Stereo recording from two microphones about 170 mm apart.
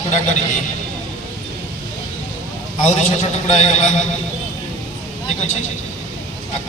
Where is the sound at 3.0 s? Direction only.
45° left (ahead or behind).